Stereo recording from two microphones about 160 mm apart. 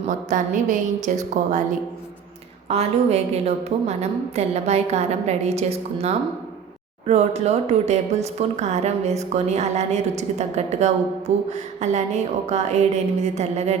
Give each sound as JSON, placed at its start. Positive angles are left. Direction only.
{"t": 0.3, "sound": "speech", "side_deg": -55}
{"t": 2.6, "sound": "a woman's voice", "side_deg": -40}